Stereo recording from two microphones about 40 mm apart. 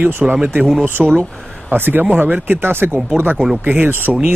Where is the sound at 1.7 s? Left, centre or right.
Right.